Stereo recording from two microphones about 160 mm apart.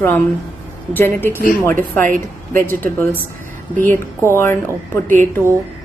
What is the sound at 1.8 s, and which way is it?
Speech, 55° right (ahead or behind).